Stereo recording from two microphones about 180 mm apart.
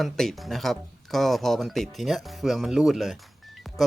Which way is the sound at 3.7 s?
Centre (ahead or behind).